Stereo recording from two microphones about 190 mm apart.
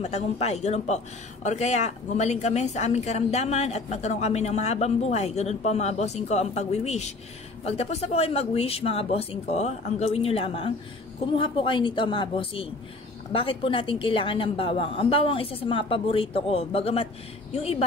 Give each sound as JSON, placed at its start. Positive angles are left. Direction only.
{"t": 0.0, "sound": "a woman's voice", "side_deg": 35}